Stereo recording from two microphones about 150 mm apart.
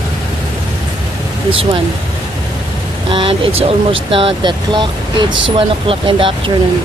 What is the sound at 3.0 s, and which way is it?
Speech, 35° right (ahead or behind).